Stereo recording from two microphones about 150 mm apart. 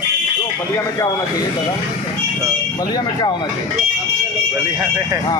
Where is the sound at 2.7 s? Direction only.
25° left (ahead or behind).